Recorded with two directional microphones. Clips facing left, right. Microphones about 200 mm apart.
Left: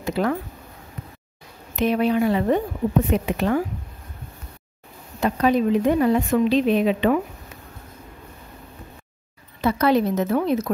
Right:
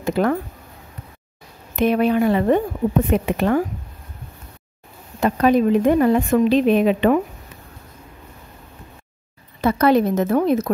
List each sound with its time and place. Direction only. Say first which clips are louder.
0.0 s speech: right 4 dB; 50° right (ahead or behind)
1.8 s a woman's voice: right 3 dB; 55° right (ahead or behind)
5.2 s a woman's voice: right 3 dB; 50° right (ahead or behind)
9.6 s a woman's voice: right 3 dB; 50° right (ahead or behind)